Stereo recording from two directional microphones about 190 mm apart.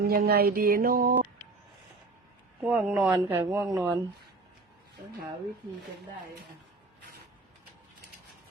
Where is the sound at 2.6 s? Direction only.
5° right (ahead or behind).